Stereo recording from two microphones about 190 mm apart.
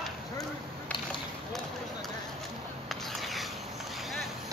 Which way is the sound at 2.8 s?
Centre (ahead or behind).